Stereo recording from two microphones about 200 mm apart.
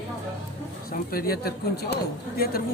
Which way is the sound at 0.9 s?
50° left (ahead or behind).